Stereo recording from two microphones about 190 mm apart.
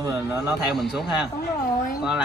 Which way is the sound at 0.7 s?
Centre (ahead or behind).